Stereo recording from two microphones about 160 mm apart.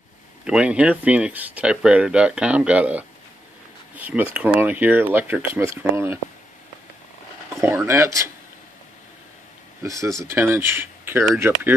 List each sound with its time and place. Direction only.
0.5 s speech: 5° right (ahead or behind)
7.6 s speech: 15° right (ahead or behind)
9.8 s speech: 20° right (ahead or behind)